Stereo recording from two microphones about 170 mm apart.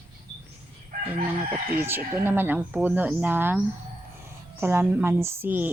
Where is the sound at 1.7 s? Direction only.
15° right (ahead or behind).